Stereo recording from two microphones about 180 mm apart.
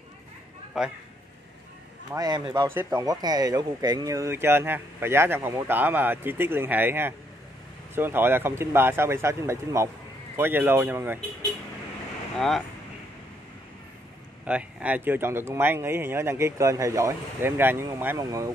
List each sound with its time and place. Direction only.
0.8 s speech: centre (ahead or behind)
2.1 s speech: 20° right (ahead or behind)
12.4 s speech: centre (ahead or behind)
14.4 s speech: 5° right (ahead or behind)